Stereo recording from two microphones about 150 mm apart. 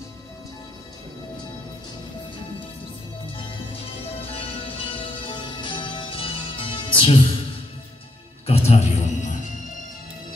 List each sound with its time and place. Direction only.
4.3 s music: 35° left (ahead or behind)
8.5 s music: 40° left (ahead or behind)